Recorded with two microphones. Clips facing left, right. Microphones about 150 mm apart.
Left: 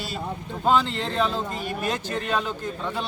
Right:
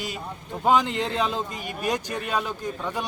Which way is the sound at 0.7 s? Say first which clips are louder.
Right 1 dB; 15° right (ahead or behind).